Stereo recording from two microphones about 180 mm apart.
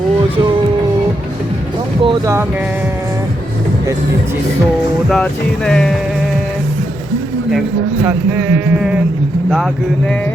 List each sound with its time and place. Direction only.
2.0 s speech: 15° right (ahead or behind)
5.0 s speech: centre (ahead or behind)
8.0 s a sound: 10° right (ahead or behind)